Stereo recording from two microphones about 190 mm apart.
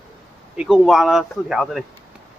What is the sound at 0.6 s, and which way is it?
A man's voice, 5° right (ahead or behind).